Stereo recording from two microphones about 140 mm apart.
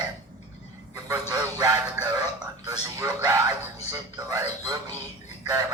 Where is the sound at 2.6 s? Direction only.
25° right (ahead or behind).